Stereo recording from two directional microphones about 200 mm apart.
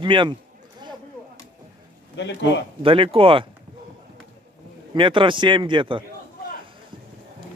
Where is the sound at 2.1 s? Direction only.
60° left (ahead or behind).